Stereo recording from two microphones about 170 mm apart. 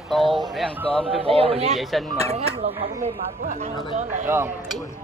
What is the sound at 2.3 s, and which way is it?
Speech, 40° right (ahead or behind).